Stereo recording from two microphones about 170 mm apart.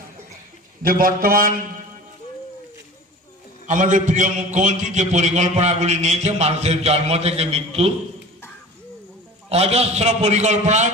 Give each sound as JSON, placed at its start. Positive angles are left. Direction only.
{"t": 0.8, "sound": "a man's voice", "side_deg": -55}
{"t": 3.6, "sound": "a man's voice", "side_deg": -45}
{"t": 9.5, "sound": "a man's voice", "side_deg": -35}